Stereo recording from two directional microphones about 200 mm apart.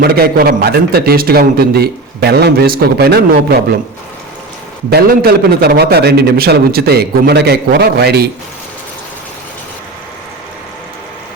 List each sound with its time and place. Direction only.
0.0 s a man's voice: 50° right (ahead or behind)
4.9 s a man's voice: 50° right (ahead or behind)